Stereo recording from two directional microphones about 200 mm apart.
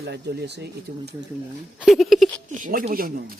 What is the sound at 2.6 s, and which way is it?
Speech, 45° right (ahead or behind).